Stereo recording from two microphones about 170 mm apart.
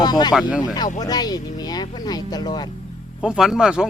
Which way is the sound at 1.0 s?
25° left (ahead or behind).